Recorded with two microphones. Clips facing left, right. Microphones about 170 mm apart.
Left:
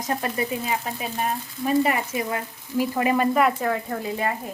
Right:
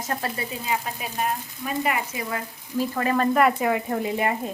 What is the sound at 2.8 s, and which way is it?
Speech, 15° left (ahead or behind).